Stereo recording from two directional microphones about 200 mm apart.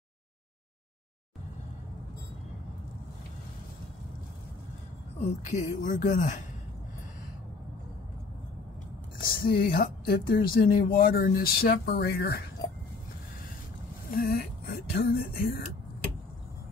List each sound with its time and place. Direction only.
5.2 s speech: 35° left (ahead or behind)
9.3 s speech: 50° left (ahead or behind)
14.1 s speech: 50° left (ahead or behind)